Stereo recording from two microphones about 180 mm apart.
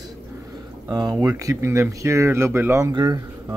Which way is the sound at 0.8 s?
20° right (ahead or behind).